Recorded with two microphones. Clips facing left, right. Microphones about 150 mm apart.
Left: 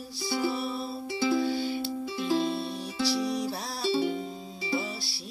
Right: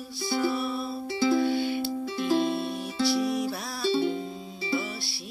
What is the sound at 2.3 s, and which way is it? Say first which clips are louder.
Music: right 2 dB; 15° right (ahead or behind).